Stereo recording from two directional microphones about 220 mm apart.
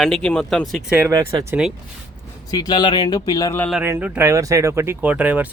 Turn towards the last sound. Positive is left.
turn(degrees=-5)  # may be behind; listen again after turning